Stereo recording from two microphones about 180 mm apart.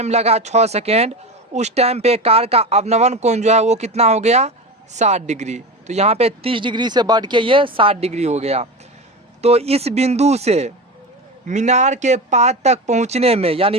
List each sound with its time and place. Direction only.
0.0 s a man's voice: 35° right (ahead or behind)